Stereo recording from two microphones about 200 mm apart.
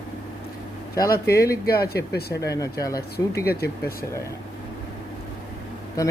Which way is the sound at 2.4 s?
15° left (ahead or behind).